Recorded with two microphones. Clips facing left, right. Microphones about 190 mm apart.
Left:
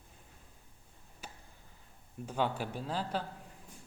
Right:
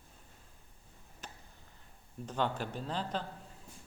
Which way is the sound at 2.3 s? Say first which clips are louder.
Left 1 dB; 10° left (ahead or behind).